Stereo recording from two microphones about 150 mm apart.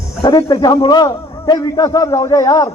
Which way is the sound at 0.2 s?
30° left (ahead or behind).